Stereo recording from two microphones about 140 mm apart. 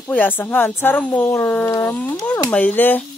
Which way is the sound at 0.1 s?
15° left (ahead or behind).